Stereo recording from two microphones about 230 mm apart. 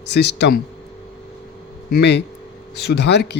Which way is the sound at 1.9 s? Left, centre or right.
Left.